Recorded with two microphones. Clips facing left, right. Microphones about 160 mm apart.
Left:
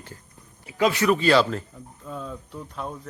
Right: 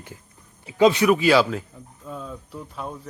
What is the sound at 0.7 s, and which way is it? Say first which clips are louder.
Speech: right 5 dB; 20° right (ahead or behind).